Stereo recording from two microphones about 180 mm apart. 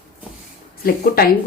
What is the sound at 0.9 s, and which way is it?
Speech, 60° left (ahead or behind).